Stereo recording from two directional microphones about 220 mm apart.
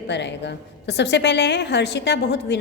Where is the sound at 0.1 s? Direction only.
50° left (ahead or behind).